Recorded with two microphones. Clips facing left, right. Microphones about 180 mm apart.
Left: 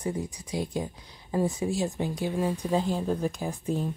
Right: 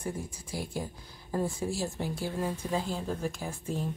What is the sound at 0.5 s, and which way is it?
A woman's voice, 20° left (ahead or behind).